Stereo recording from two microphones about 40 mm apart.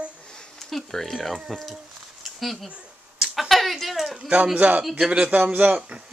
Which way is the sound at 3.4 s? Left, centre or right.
Centre.